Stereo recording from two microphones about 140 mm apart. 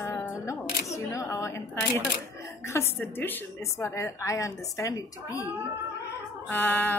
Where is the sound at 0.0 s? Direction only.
20° left (ahead or behind).